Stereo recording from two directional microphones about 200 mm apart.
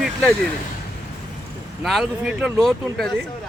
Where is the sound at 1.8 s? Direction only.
Centre (ahead or behind).